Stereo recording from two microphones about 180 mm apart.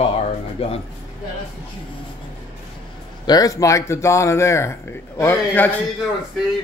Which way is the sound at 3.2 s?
20° left (ahead or behind).